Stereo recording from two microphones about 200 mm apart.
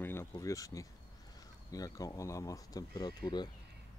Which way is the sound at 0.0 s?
10° left (ahead or behind).